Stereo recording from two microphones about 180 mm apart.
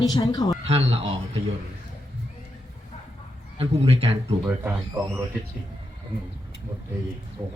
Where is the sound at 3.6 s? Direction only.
35° right (ahead or behind).